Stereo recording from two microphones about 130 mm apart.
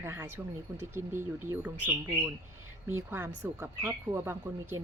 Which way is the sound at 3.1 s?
20° right (ahead or behind).